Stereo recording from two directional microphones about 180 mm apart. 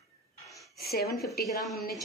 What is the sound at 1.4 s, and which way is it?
Speech, centre (ahead or behind).